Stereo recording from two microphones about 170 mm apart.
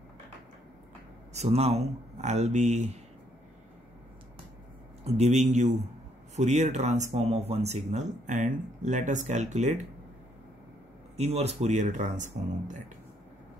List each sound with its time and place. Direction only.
1.3 s speech: 40° right (ahead or behind)
5.0 s speech: 40° right (ahead or behind)
11.1 s speech: 40° right (ahead or behind)